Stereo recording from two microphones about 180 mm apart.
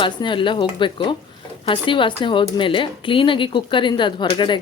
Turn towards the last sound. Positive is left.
turn(degrees=25)  # may be behind; listen again after turning